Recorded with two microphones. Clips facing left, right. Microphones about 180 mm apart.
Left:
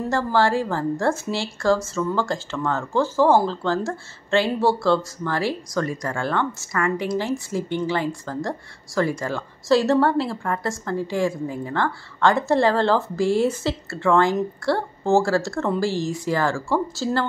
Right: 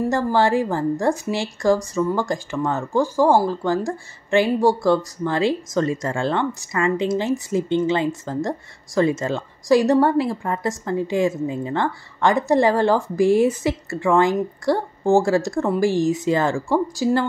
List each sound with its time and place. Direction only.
0.0 s speech: 20° right (ahead or behind)